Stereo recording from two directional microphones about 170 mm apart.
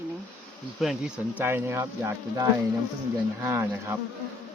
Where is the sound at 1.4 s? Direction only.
15° right (ahead or behind).